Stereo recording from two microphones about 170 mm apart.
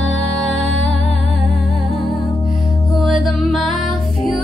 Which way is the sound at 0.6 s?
90° left.